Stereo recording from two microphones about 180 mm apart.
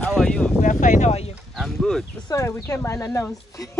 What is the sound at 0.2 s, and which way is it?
Speech, 5° left (ahead or behind).